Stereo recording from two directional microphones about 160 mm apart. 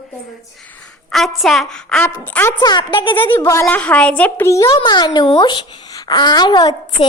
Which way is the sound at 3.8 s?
5° left (ahead or behind).